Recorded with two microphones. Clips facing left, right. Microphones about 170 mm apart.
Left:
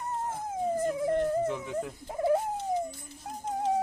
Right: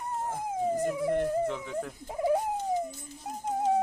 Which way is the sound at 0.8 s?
15° right (ahead or behind).